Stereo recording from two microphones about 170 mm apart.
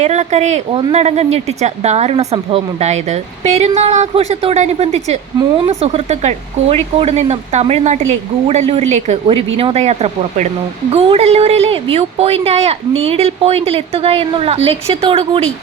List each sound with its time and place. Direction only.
0.0 s a woman's voice: 40° right (ahead or behind)